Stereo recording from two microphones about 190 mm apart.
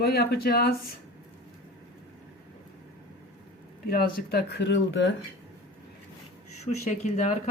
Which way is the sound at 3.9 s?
55° left (ahead or behind).